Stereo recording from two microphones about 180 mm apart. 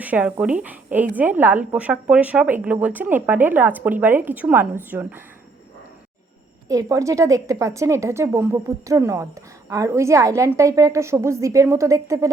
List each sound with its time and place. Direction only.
0.0 s a woman's voice: 10° right (ahead or behind)
6.7 s a woman's voice: 20° right (ahead or behind)